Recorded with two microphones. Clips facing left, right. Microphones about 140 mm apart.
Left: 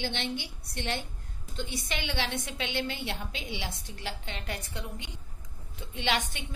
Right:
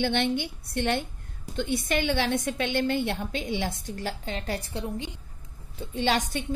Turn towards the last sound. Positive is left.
turn(degrees=-40)  # may be behind; listen again after turning